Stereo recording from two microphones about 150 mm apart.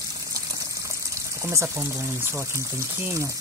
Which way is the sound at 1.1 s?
20° right (ahead or behind).